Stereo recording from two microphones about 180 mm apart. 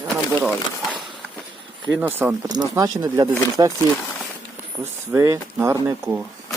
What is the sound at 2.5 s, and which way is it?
Speech, 20° right (ahead or behind).